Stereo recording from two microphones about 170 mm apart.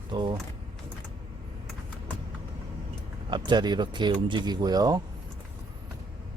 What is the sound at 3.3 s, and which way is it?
Speech, 25° right (ahead or behind).